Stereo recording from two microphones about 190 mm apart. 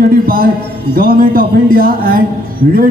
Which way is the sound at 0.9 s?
50° right (ahead or behind).